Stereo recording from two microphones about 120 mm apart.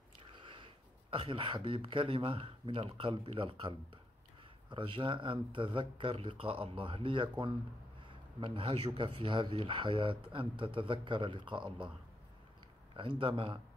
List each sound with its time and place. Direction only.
0.3 s speech: 40° right (ahead or behind)
4.6 s speech: 45° right (ahead or behind)
12.9 s speech: 45° right (ahead or behind)